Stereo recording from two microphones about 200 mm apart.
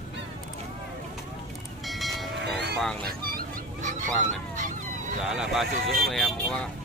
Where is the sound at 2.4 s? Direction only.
55° right (ahead or behind).